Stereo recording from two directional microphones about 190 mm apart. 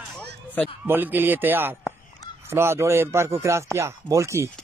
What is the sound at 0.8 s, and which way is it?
Speech, 10° right (ahead or behind).